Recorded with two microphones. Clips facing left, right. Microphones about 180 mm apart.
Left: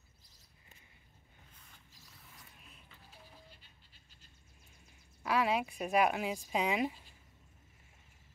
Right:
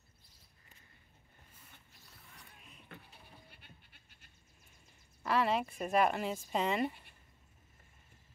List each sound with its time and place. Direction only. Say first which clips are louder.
2.9 s goat: right 4 dB; 60° right (ahead or behind)
5.2 s speech: even; 5° left (ahead or behind)
6.9 s a sound: even; 60° right (ahead or behind)